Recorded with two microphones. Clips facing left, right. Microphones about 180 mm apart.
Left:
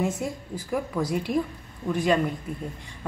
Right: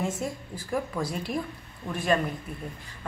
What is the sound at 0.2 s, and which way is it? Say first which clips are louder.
A woman's voice: left 2 dB; 5° left (ahead or behind).